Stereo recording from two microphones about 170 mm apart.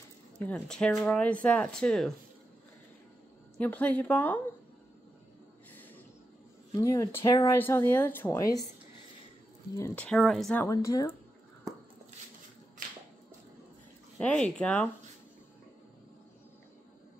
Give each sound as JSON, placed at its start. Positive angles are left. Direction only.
{"t": 0.4, "sound": "speech", "side_deg": 5}
{"t": 3.5, "sound": "speech", "side_deg": 10}
{"t": 6.7, "sound": "speech", "side_deg": 20}
{"t": 9.8, "sound": "speech", "side_deg": 10}
{"t": 10.6, "sound": "speech", "side_deg": 20}
{"t": 14.1, "sound": "speech", "side_deg": 5}